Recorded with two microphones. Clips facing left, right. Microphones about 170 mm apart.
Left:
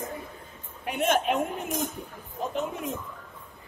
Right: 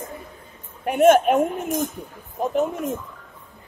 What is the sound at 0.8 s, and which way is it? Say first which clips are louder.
A woman's voice: right 10 dB; 50° right (ahead or behind).